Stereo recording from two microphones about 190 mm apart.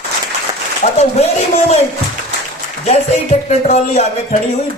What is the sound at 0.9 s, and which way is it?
Speech, 35° left (ahead or behind).